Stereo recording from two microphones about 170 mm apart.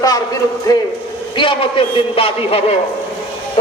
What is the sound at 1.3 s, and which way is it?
A man's voice, 30° left (ahead or behind).